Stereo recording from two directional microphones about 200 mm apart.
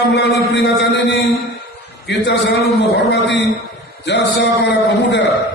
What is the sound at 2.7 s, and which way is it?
A man's voice, 60° left (ahead or behind).